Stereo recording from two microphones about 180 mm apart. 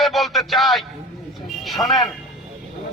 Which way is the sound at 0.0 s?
Centre (ahead or behind).